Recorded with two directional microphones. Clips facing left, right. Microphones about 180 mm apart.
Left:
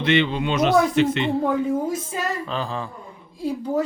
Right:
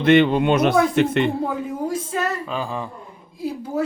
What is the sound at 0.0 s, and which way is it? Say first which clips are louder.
Speech: right 6 dB; 50° right (ahead or behind).